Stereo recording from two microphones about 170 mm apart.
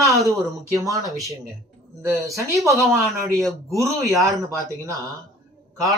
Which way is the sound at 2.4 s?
20° right (ahead or behind).